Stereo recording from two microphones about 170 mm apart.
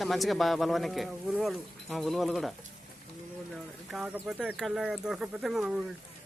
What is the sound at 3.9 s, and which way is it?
Speech, 5° right (ahead or behind).